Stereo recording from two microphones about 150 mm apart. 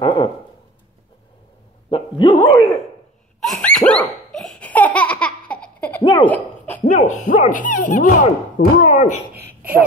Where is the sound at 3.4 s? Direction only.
Centre (ahead or behind).